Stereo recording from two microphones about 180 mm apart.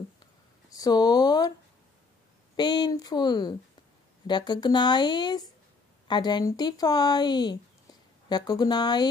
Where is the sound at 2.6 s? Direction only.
25° left (ahead or behind).